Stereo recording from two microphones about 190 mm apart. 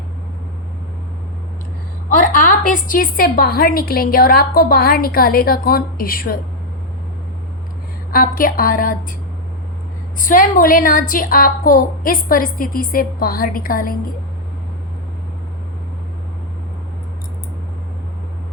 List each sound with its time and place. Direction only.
2.0 s a woman's voice: 45° left (ahead or behind)
8.1 s a woman's voice: 50° left (ahead or behind)
10.2 s a woman's voice: 45° left (ahead or behind)